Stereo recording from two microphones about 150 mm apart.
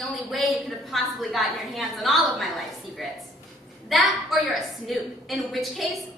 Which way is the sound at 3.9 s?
Centre (ahead or behind).